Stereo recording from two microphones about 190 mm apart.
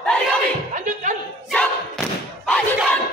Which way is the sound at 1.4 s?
5° left (ahead or behind).